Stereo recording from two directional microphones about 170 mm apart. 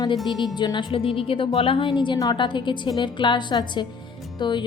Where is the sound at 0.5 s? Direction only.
25° left (ahead or behind).